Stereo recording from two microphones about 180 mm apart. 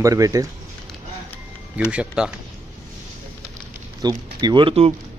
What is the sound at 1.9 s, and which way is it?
Speech, 5° right (ahead or behind).